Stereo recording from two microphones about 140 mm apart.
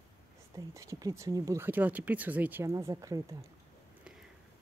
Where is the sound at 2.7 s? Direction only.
25° right (ahead or behind).